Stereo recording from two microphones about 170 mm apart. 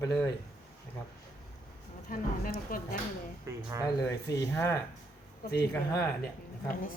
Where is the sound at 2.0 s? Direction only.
55° left (ahead or behind).